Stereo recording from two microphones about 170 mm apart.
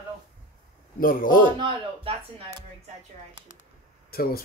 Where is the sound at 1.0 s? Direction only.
55° left (ahead or behind).